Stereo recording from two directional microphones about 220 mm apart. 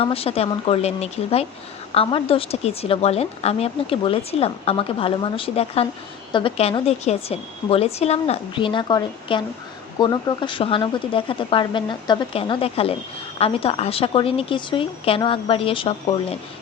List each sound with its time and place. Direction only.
0.0 s a woman's voice: 25° left (ahead or behind)